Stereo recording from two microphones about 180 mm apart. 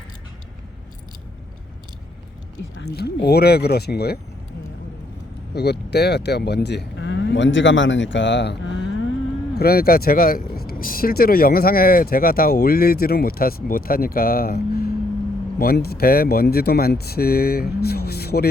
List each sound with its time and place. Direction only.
2.8 s speech: 65° left (ahead or behind)
5.5 s speech: 65° left (ahead or behind); by 9.0 s 80° left
9.6 s speech: 55° left (ahead or behind)